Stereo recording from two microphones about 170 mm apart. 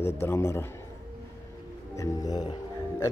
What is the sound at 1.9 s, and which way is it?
Music, 20° left (ahead or behind).